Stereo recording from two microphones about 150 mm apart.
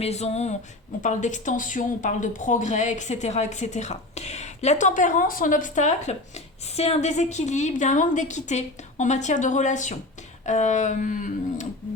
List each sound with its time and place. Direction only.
0.0 s speech: 45° left (ahead or behind)
6.7 s speech: 45° left (ahead or behind)